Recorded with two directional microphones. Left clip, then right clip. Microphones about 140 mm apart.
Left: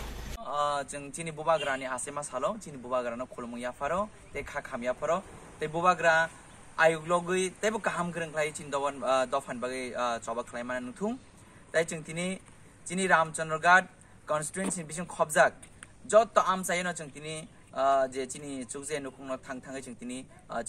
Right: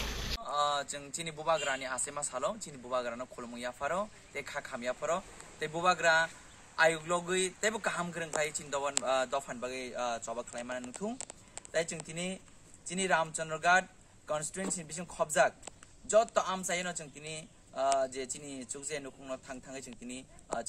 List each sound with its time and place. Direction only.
0.4 s a man's voice: 10° right (ahead or behind)
12.1 s a man's voice: 20° right (ahead or behind)
14.4 s a man's voice: 25° right (ahead or behind)